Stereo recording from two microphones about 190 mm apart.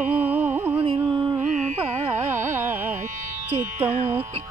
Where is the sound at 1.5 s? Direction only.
40° right (ahead or behind).